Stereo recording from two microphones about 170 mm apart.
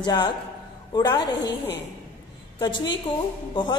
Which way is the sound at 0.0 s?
25° left (ahead or behind).